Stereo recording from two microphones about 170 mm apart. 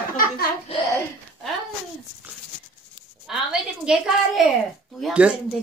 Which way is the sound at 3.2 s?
5° right (ahead or behind).